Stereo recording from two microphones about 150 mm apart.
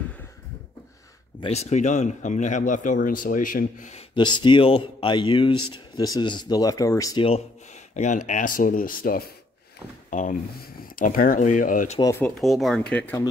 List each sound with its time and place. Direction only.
1.4 s speech: 45° left (ahead or behind); by 3.9 s 65° left (ahead or behind)
4.1 s speech: 30° left (ahead or behind)
7.9 s speech: 55° left (ahead or behind)
10.0 s speech: 60° left (ahead or behind)
10.8 s speech: 70° left (ahead or behind)
12.0 s speech: 20° left (ahead or behind)
12.4 s speech: centre (ahead or behind)